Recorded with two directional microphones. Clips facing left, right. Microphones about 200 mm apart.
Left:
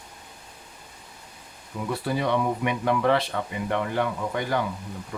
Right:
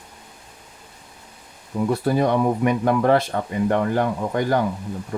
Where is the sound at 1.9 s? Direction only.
45° right (ahead or behind).